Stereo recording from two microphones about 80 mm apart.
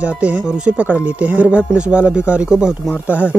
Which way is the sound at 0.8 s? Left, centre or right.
Centre.